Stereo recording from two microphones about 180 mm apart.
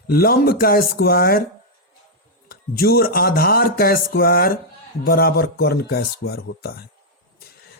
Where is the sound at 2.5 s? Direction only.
60° left (ahead or behind).